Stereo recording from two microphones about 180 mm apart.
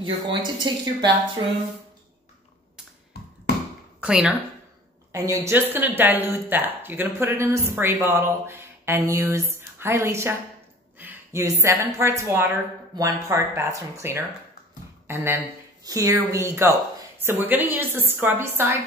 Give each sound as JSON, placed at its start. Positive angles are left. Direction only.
{"t": 0.0, "sound": "speech", "side_deg": -25}
{"t": 3.1, "sound": "a sound", "side_deg": 60}
{"t": 4.0, "sound": "speech", "side_deg": -5}
{"t": 5.1, "sound": "a woman's voice", "side_deg": -20}
{"t": 11.0, "sound": "a sound", "side_deg": -10}
{"t": 11.6, "sound": "a woman's voice", "side_deg": -15}